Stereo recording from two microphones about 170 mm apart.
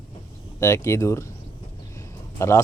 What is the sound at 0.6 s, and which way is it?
Speech, 15° left (ahead or behind).